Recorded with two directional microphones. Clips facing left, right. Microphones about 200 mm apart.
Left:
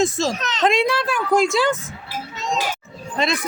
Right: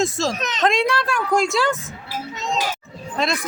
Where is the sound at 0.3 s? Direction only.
20° right (ahead or behind).